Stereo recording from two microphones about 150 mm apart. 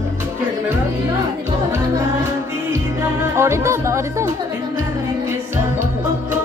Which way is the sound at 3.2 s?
20° right (ahead or behind).